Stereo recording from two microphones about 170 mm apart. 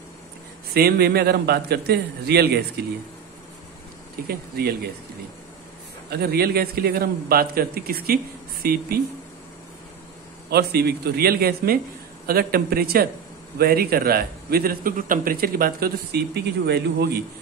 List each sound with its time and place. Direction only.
0.7 s a man's voice: 70° right (ahead or behind)
4.3 s a man's voice: 65° right (ahead or behind)
6.0 s a man's voice: 65° right (ahead or behind)
10.5 s a man's voice: 70° right (ahead or behind)